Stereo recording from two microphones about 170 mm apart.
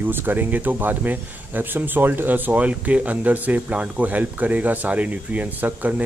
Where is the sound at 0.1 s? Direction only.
10° right (ahead or behind).